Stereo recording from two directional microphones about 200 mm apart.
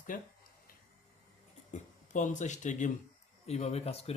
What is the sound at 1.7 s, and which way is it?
Speech, 40° left (ahead or behind).